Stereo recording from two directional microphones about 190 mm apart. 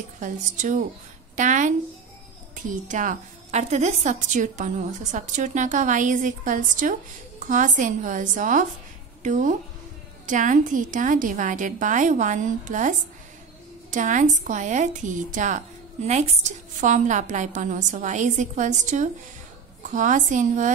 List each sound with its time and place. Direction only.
0.2 s a woman's voice: 40° right (ahead or behind)